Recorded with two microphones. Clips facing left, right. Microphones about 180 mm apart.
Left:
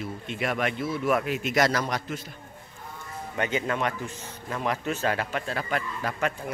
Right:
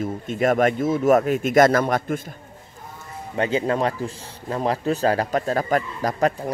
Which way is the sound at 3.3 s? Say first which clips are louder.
Right 6 dB; 30° right (ahead or behind).